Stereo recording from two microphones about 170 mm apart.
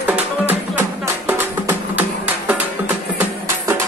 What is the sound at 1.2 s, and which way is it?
Music, 10° right (ahead or behind).